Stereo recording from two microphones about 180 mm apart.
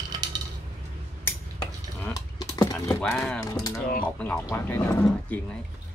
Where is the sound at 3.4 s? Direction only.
20° left (ahead or behind).